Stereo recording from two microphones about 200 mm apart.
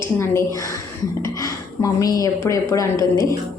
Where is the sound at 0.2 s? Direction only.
15° left (ahead or behind).